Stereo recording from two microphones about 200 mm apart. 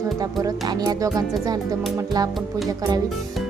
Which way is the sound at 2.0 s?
20° right (ahead or behind).